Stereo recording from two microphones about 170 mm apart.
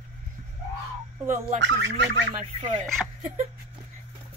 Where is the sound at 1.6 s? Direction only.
90° right.